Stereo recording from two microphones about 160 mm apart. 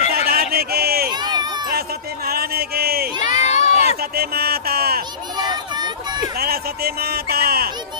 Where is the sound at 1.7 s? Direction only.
75° right (ahead or behind).